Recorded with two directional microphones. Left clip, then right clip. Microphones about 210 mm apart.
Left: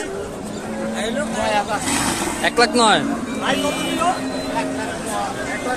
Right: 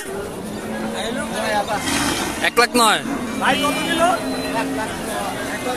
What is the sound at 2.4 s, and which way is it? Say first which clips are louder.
Speech: even; 5° right (ahead or behind).